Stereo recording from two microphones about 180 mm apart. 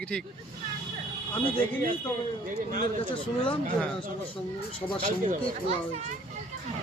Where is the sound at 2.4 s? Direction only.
45° right (ahead or behind).